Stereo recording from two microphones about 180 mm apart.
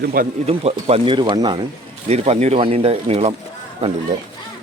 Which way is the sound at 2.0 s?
35° right (ahead or behind).